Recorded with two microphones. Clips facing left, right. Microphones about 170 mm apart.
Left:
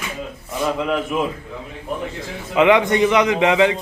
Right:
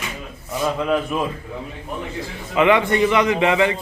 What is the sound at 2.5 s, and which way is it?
A man's voice, 15° left (ahead or behind).